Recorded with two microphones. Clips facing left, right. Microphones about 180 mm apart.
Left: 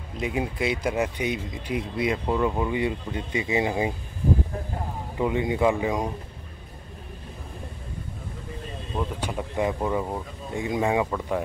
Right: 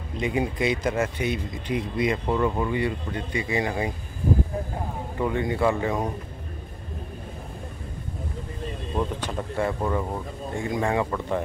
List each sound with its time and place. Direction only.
0.2 s speech: 5° left (ahead or behind)
0.9 s speech: 15° left (ahead or behind)
5.2 s speech: 15° left (ahead or behind)
9.2 s speech: 15° left (ahead or behind)